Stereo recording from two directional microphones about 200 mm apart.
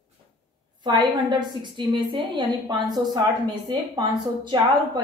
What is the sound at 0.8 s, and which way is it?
A woman's voice, 20° right (ahead or behind).